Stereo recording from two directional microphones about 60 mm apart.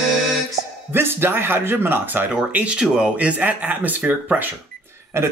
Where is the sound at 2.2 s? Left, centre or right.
Right.